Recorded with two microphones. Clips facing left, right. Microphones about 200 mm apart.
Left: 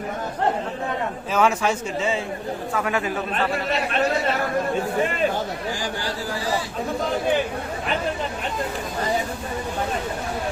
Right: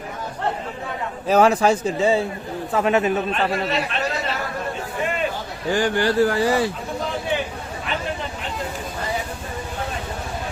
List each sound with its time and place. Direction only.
1.3 s a man's voice: 35° right (ahead or behind)
2.7 s a man's voice: 25° right (ahead or behind)
5.7 s speech: 65° right (ahead or behind)